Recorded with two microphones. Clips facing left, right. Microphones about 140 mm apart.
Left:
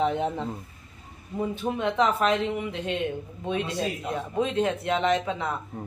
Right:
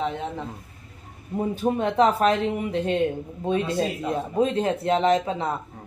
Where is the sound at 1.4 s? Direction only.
40° right (ahead or behind).